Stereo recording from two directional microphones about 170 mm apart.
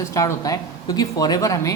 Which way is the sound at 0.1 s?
20° left (ahead or behind).